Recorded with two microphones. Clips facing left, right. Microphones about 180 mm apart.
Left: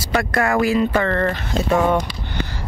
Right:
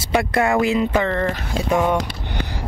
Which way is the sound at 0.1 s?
20° right (ahead or behind).